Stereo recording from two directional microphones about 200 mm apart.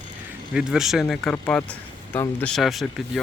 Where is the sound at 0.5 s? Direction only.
5° right (ahead or behind).